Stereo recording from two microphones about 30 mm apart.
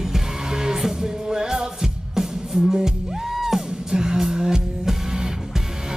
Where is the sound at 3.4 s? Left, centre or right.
Centre.